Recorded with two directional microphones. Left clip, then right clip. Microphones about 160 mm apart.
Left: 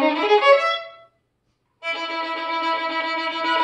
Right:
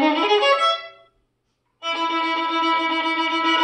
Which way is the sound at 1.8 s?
15° left (ahead or behind).